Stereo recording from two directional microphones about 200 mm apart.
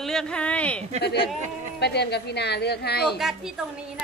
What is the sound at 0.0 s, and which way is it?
Speech, 5° left (ahead or behind).